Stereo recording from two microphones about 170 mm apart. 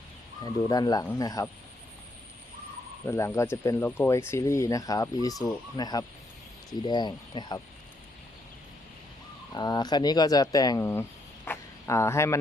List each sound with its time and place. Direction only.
0.7 s speech: 20° left (ahead or behind)
3.1 s speech: 15° left (ahead or behind)
9.5 s speech: 25° left (ahead or behind)
11.4 s a sound: 15° left (ahead or behind)